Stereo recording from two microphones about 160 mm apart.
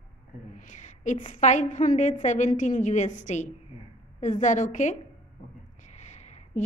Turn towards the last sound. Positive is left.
turn(degrees=45)  # may be behind; listen again after turning